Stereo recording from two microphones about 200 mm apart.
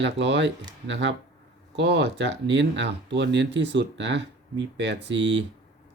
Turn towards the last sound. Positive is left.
turn(degrees=-65)  # may be behind; listen again after turning